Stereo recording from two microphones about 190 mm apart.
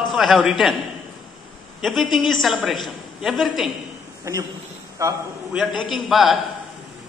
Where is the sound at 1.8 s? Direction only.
Centre (ahead or behind).